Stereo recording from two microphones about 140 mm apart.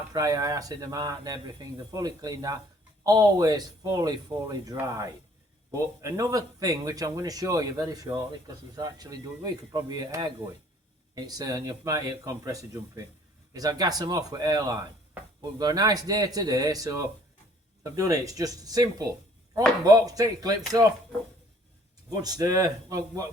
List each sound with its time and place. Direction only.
0.1 s speech: 25° right (ahead or behind)
22.1 s speech: 25° right (ahead or behind)